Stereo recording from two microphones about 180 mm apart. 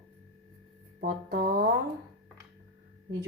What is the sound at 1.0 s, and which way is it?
Music, 55° right (ahead or behind).